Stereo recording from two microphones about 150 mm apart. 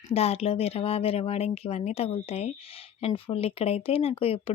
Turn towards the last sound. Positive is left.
turn(degrees=40)  # may be behind; listen again after turning